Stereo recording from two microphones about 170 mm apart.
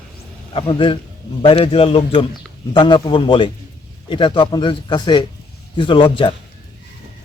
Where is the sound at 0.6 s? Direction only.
30° left (ahead or behind).